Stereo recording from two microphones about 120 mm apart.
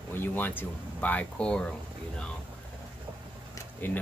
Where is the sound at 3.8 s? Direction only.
15° left (ahead or behind).